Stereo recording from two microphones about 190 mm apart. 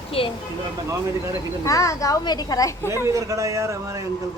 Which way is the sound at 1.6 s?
15° left (ahead or behind).